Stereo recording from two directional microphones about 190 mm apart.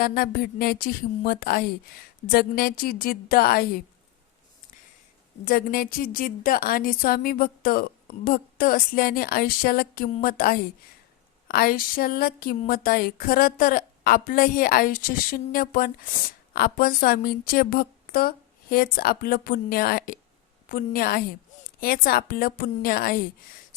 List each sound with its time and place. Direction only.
0.0 s a woman's voice: 50° left (ahead or behind)
5.5 s a woman's voice: 50° left (ahead or behind)